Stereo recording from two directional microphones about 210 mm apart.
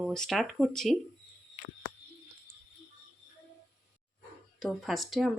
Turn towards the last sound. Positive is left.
turn(degrees=0)  # may be behind; listen again after turning